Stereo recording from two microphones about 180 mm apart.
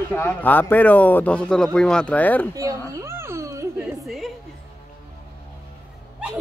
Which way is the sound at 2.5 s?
20° right (ahead or behind).